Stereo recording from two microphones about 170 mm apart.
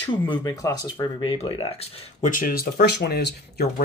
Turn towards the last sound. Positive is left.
turn(degrees=70)  # may be behind; listen again after turning